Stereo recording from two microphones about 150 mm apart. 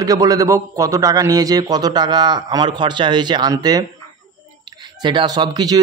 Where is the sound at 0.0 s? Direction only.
25° right (ahead or behind).